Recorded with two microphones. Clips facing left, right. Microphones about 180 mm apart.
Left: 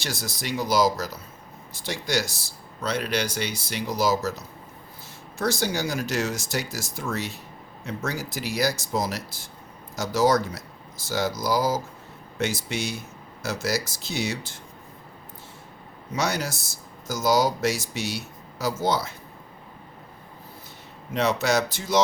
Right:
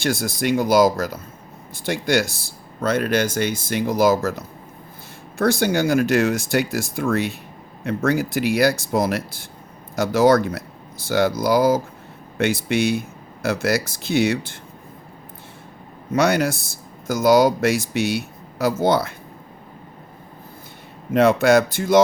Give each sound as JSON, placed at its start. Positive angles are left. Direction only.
{"t": 0.0, "sound": "speech", "side_deg": -55}
{"t": 16.1, "sound": "speech", "side_deg": -60}
{"t": 21.1, "sound": "speech", "side_deg": -55}